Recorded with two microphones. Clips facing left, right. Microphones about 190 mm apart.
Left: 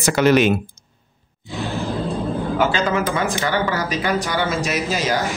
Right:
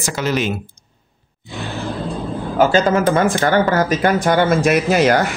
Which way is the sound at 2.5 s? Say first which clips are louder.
Right 7 dB; 40° right (ahead or behind).